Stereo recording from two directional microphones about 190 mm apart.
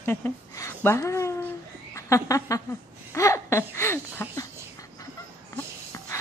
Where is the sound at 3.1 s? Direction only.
15° left (ahead or behind).